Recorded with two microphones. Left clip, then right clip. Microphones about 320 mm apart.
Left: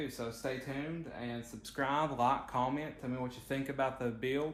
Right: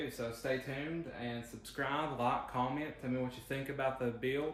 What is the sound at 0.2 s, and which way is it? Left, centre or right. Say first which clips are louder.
Speech: right 5 dB; centre.